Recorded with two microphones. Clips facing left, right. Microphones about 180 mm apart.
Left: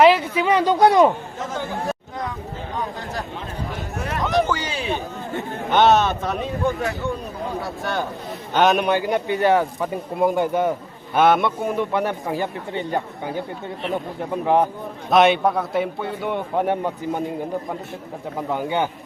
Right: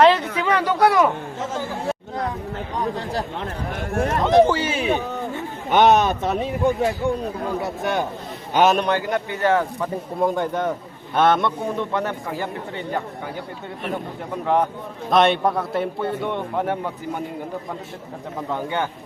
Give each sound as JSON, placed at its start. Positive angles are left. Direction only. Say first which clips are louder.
{"t": 0.3, "sound": "speech", "louder": "left 2 dB", "side_deg": 15}
{"t": 2.9, "sound": "speech", "louder": "right 4 dB", "side_deg": -35}
{"t": 3.9, "sound": "a sound", "louder": "right 8 dB", "side_deg": -50}
{"t": 4.2, "sound": "speech", "louder": "right 5 dB", "side_deg": -25}
{"t": 5.8, "sound": "speech", "louder": "even", "side_deg": -15}
{"t": 6.2, "sound": "speech", "louder": "right 2 dB", "side_deg": -25}
{"t": 8.5, "sound": "a man's voice", "louder": "even", "side_deg": -5}
{"t": 8.8, "sound": "a man's voice", "louder": "left 2 dB", "side_deg": 15}
{"t": 14.4, "sound": "a man's voice", "louder": "left 2 dB", "side_deg": 15}
{"t": 15.1, "sound": "a man's voice", "louder": "left 1 dB", "side_deg": 0}
{"t": 16.6, "sound": "a man's voice", "louder": "left 3 dB", "side_deg": 20}
{"t": 18.3, "sound": "a man's voice", "louder": "left 2 dB", "side_deg": 15}